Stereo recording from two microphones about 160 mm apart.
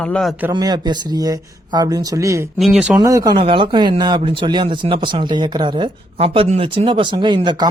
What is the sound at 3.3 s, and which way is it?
Speech, 35° right (ahead or behind).